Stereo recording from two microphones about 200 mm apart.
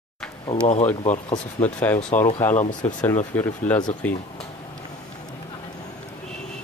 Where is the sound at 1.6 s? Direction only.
10° left (ahead or behind).